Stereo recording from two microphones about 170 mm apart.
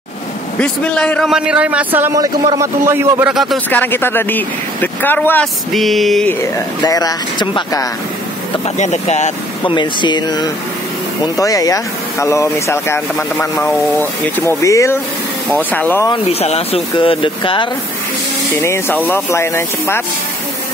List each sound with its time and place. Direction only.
0.6 s a man's voice: 5° left (ahead or behind)
3.7 s speech: 10° left (ahead or behind)
6.8 s speech: 20° left (ahead or behind)
8.7 s speech: 40° left (ahead or behind)
9.6 s speech: 30° left (ahead or behind); by 16.1 s 10° left (ahead or behind)
16.1 s speech: 35° left (ahead or behind)
18.6 s speech: 15° left (ahead or behind)